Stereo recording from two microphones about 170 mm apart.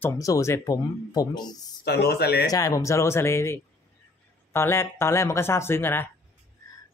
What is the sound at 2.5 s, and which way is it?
Speech, 20° left (ahead or behind).